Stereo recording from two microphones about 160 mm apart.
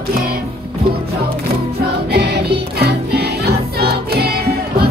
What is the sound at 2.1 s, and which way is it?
Music, 90° right.